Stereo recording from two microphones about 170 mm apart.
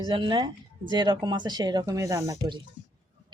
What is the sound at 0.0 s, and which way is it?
Speech, 25° right (ahead or behind).